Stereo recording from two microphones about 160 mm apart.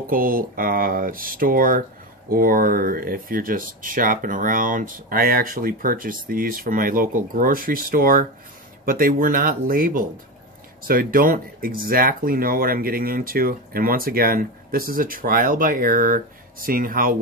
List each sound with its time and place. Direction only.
0.0 s speech: 60° right (ahead or behind)